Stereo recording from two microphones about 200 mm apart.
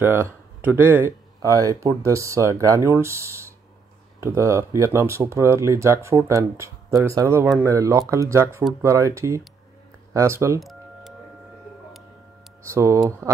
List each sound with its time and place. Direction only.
0.0 s speech: 10° right (ahead or behind)
10.6 s music: centre (ahead or behind)
12.7 s speech: 15° right (ahead or behind)